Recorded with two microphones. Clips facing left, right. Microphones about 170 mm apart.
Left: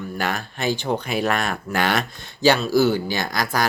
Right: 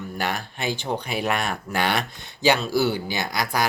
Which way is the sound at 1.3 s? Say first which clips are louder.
Left 2 dB; 45° left (ahead or behind).